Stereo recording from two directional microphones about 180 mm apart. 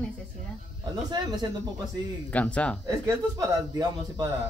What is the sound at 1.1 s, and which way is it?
Speech, 25° right (ahead or behind).